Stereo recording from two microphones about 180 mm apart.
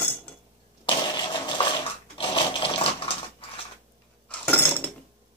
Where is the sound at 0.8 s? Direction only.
25° left (ahead or behind).